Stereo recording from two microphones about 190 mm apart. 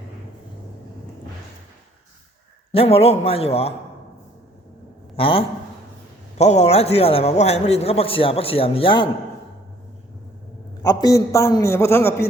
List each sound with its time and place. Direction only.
2.7 s a man's voice: 30° left (ahead or behind)
5.1 s a man's voice: 30° left (ahead or behind)
10.8 s a man's voice: 20° left (ahead or behind)